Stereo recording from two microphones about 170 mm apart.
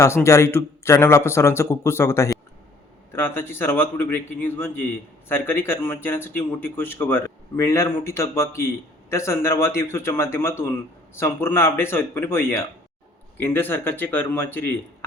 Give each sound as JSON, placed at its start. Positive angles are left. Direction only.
{"t": 0.0, "sound": "speech", "side_deg": 15}